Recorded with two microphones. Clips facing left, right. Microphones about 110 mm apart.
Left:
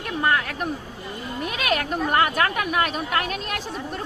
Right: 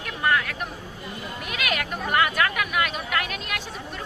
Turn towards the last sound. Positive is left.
turn(degrees=35)  # may be behind; listen again after turning